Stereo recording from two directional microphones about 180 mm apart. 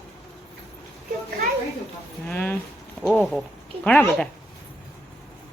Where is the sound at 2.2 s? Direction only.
10° left (ahead or behind).